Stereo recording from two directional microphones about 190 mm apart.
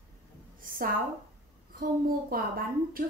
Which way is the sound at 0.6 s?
50° right (ahead or behind).